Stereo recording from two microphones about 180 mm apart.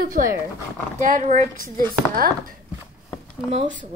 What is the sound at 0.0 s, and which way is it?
A woman's voice, 50° right (ahead or behind).